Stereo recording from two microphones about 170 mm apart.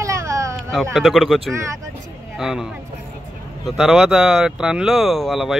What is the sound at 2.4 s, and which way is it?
Speech, 5° right (ahead or behind).